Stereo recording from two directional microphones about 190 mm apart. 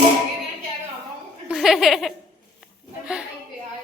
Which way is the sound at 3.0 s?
5° right (ahead or behind).